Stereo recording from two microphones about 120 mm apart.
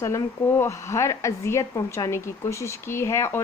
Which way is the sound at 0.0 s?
20° left (ahead or behind).